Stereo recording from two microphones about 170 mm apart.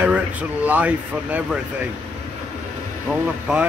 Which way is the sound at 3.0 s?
5° right (ahead or behind).